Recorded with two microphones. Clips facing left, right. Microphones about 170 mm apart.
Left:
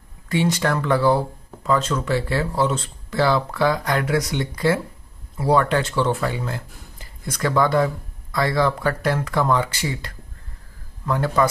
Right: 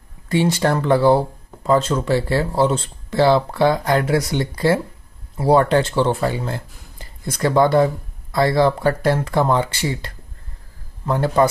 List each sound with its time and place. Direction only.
0.3 s speech: 30° right (ahead or behind)